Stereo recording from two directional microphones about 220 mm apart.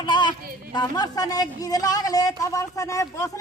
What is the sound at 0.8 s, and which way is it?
Speech, 15° left (ahead or behind).